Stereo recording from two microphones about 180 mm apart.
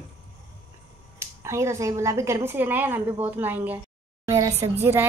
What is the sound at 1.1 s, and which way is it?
A woman's voice, 15° right (ahead or behind).